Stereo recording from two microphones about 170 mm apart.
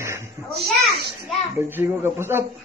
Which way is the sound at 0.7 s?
Centre (ahead or behind).